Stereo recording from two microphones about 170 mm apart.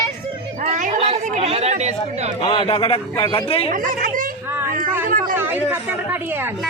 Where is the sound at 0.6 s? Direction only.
45° right (ahead or behind).